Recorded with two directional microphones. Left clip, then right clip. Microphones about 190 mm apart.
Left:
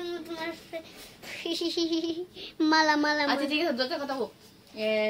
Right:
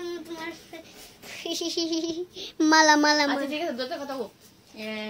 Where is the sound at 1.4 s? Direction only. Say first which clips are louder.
Even; 15° right (ahead or behind).